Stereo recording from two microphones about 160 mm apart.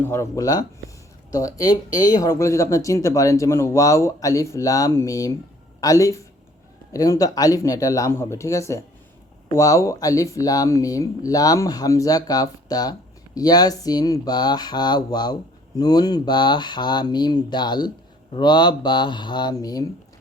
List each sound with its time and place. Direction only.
0.0 s speech: 15° left (ahead or behind)